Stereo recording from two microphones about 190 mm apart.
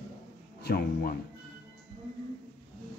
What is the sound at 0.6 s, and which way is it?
Speech, 55° left (ahead or behind).